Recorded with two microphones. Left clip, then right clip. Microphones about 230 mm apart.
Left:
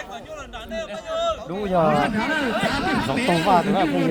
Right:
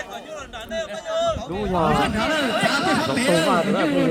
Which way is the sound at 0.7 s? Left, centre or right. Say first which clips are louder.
Right 2 dB; centre.